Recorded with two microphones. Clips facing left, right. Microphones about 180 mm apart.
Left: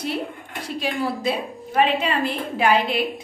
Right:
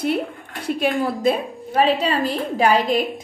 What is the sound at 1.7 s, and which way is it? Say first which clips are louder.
A woman's voice: right 2 dB; 35° right (ahead or behind).